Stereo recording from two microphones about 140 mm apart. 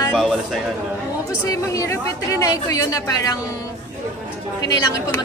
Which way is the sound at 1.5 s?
25° left (ahead or behind).